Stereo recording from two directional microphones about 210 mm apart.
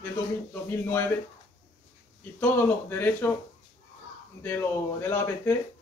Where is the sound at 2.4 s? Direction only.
10° left (ahead or behind).